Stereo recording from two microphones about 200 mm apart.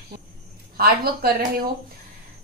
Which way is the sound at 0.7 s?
50° right (ahead or behind).